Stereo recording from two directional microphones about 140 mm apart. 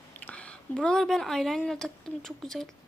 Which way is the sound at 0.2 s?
10° left (ahead or behind).